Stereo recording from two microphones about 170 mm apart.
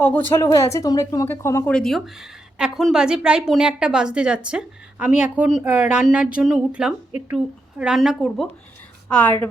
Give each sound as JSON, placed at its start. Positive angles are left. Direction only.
{"t": 0.0, "sound": "speech", "side_deg": 10}
{"t": 1.7, "sound": "a woman's voice", "side_deg": 0}